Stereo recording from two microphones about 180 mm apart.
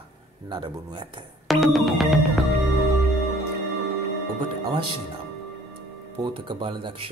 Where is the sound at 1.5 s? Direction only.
Centre (ahead or behind).